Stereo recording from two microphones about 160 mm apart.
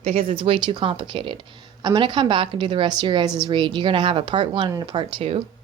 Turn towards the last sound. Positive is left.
turn(degrees=-35)  # may be behind; listen again after turning